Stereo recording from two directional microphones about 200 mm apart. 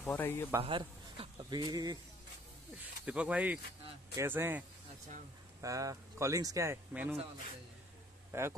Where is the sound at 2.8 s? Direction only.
5° right (ahead or behind).